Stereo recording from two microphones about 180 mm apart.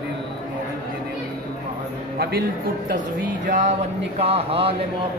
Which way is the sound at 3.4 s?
45° right (ahead or behind).